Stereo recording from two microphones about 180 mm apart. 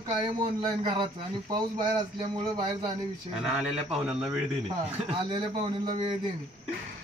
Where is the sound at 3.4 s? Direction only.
5° right (ahead or behind).